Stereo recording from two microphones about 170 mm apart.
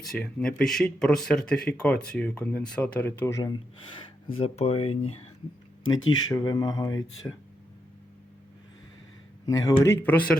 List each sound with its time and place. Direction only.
0.0 s speech: 5° left (ahead or behind)
4.4 s speech: 40° left (ahead or behind)
5.9 s speech: 25° left (ahead or behind)
9.7 s speech: 10° left (ahead or behind)